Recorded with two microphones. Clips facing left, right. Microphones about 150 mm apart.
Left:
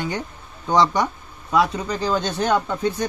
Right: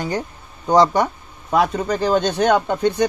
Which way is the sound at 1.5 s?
50° right (ahead or behind).